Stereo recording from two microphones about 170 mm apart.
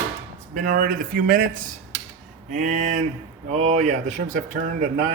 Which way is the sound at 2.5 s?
45° right (ahead or behind).